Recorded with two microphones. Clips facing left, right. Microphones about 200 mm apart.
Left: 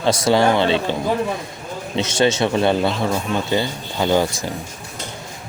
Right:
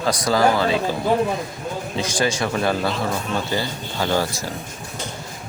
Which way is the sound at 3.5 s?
20° left (ahead or behind).